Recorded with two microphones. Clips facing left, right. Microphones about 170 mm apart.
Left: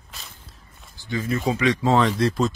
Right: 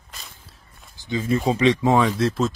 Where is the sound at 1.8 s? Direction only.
10° right (ahead or behind).